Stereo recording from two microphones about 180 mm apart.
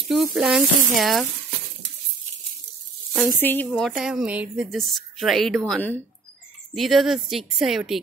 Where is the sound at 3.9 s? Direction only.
5° right (ahead or behind).